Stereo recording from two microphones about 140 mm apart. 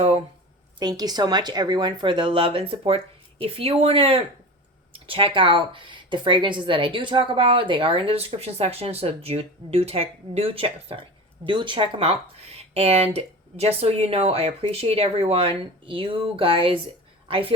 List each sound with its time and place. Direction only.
0.8 s a woman's voice: 30° right (ahead or behind)